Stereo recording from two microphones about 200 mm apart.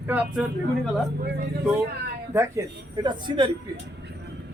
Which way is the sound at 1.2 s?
50° right (ahead or behind).